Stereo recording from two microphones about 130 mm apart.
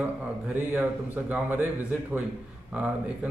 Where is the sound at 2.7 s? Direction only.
10° right (ahead or behind).